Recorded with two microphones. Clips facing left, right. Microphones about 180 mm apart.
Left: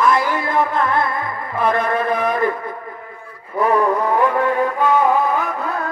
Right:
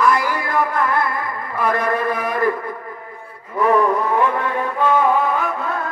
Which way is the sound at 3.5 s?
35° left (ahead or behind).